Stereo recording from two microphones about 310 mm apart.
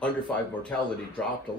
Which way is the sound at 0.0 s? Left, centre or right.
Centre.